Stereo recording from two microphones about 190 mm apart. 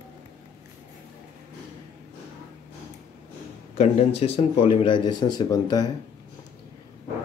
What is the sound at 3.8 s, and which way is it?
A man's voice, 35° left (ahead or behind).